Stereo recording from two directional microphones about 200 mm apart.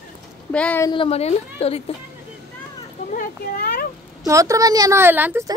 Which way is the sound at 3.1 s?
50° left (ahead or behind).